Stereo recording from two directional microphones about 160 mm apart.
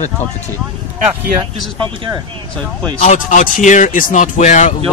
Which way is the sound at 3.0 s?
50° left (ahead or behind).